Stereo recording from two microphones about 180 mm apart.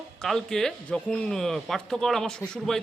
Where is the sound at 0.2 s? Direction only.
Centre (ahead or behind).